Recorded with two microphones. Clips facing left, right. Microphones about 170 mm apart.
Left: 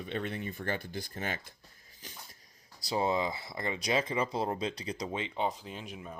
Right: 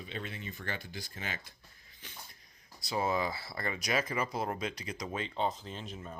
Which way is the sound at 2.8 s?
30° left (ahead or behind).